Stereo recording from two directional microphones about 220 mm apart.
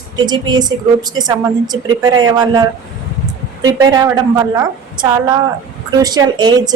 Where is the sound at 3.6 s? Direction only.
15° right (ahead or behind).